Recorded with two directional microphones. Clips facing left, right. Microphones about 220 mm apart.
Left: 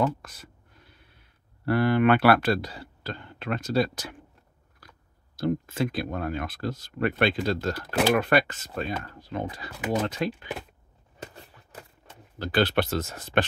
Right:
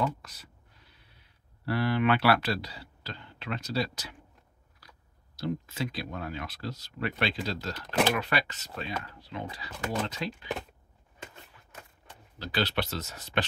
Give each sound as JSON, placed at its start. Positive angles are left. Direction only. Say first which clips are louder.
{"t": 0.0, "sound": "speech", "louder": "left 5 dB", "side_deg": 50}
{"t": 1.7, "sound": "speech", "louder": "left 5 dB", "side_deg": 50}
{"t": 7.8, "sound": "speech", "louder": "even", "side_deg": 5}
{"t": 8.1, "sound": "speech", "louder": "left 8 dB", "side_deg": 50}
{"t": 11.1, "sound": "a sound", "louder": "left 5 dB", "side_deg": 35}
{"t": 12.4, "sound": "speech", "louder": "left 7 dB", "side_deg": 50}